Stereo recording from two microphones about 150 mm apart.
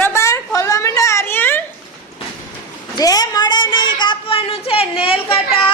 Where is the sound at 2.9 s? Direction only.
25° left (ahead or behind).